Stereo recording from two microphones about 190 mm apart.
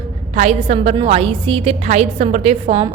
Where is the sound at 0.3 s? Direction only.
35° right (ahead or behind).